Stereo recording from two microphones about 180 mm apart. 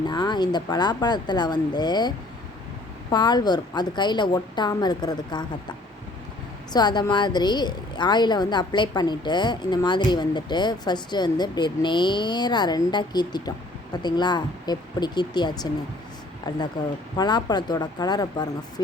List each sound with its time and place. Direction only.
0.1 s a woman's voice: 25° left (ahead or behind)
6.7 s a woman's voice: 25° left (ahead or behind)